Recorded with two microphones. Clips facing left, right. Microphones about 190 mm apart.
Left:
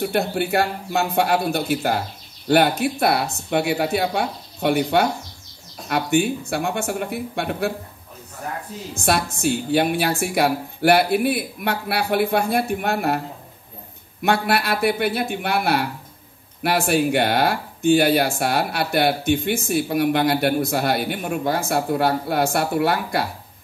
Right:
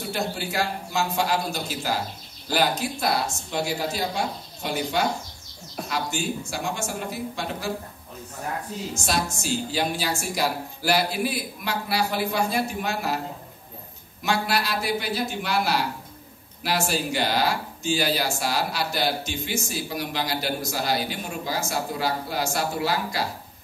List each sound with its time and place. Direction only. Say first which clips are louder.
0.0 s speech: left 7 dB; 60° left (ahead or behind)
8.9 s speech: left 6 dB; 60° left (ahead or behind)
14.2 s speech: left 5 dB; 60° left (ahead or behind)